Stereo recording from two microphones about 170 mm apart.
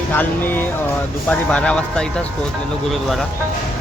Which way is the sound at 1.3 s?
5° left (ahead or behind).